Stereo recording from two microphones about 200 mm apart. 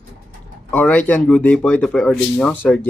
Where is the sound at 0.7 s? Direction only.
10° left (ahead or behind).